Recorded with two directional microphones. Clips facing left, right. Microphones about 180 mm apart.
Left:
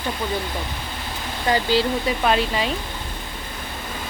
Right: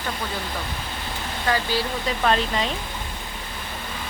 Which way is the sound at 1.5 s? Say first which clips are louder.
Left 3 dB; 20° left (ahead or behind).